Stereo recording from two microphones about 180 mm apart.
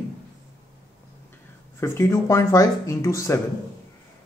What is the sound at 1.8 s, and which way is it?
A man's voice, 15° left (ahead or behind).